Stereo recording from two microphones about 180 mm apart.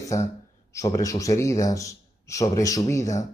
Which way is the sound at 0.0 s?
15° left (ahead or behind).